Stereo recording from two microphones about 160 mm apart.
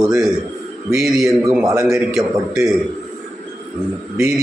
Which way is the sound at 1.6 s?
20° right (ahead or behind).